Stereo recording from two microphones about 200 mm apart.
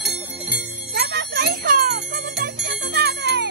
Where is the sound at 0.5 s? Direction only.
55° right (ahead or behind).